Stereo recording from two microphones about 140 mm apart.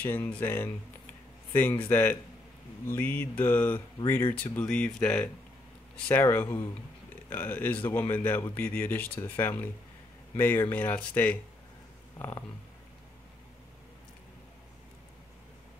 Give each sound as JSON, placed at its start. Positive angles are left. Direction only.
{"t": 0.0, "sound": "speech", "side_deg": 15}